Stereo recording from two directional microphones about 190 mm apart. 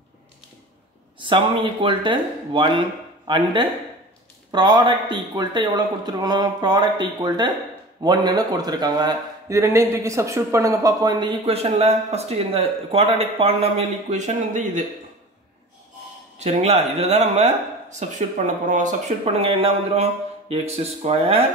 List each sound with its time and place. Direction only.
1.2 s a man's voice: 25° right (ahead or behind)
16.3 s speech: 35° right (ahead or behind)